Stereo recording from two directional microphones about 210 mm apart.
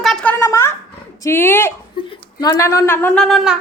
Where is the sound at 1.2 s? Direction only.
10° left (ahead or behind).